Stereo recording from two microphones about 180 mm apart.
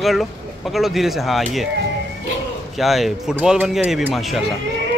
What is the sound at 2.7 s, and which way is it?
Speech, centre (ahead or behind).